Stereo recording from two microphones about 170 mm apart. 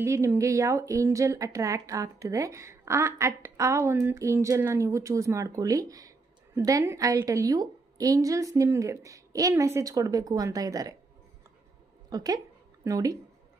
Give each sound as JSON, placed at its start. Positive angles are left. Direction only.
{"t": 0.0, "sound": "speech", "side_deg": -15}
{"t": 12.1, "sound": "speech", "side_deg": -20}